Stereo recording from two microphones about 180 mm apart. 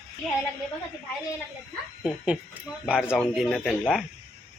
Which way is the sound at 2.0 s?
5° right (ahead or behind).